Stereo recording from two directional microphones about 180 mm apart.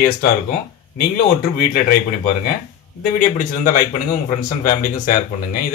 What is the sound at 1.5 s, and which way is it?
Speech, 55° left (ahead or behind).